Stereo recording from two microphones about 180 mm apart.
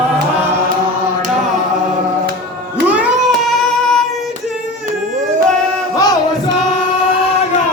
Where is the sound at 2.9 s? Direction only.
5° right (ahead or behind).